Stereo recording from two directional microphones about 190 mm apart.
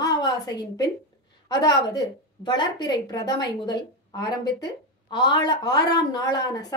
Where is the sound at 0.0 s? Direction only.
20° left (ahead or behind).